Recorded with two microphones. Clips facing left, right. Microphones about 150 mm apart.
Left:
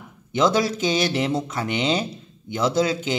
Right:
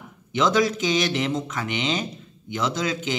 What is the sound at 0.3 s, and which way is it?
Speech, 35° left (ahead or behind).